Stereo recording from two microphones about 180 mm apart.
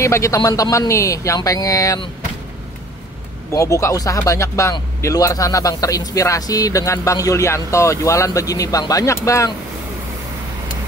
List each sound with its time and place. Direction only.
0.0 s speech: 15° left (ahead or behind)
3.5 s speech: 15° left (ahead or behind)